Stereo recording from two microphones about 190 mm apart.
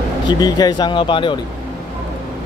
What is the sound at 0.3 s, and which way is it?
Speech, 20° left (ahead or behind).